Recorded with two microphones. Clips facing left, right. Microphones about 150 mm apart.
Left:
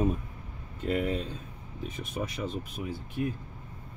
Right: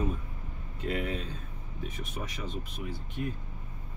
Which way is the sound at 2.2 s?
25° left (ahead or behind).